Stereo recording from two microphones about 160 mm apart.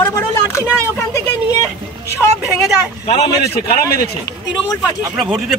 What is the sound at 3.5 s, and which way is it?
Speech, 15° left (ahead or behind).